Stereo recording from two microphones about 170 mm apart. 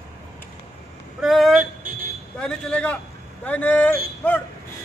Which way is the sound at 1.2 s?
Centre (ahead or behind).